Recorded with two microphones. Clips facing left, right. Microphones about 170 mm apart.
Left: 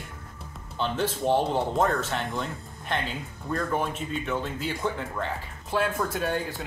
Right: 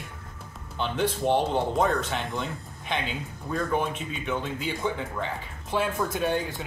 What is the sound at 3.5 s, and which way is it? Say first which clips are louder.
Speech: right 1 dB; 5° right (ahead or behind).